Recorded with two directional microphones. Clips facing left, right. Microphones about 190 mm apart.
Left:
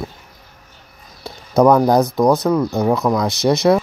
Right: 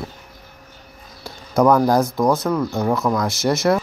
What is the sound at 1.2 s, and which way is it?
Speech, 20° left (ahead or behind).